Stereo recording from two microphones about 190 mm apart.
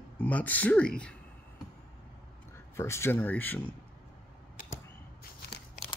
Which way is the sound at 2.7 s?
15° left (ahead or behind).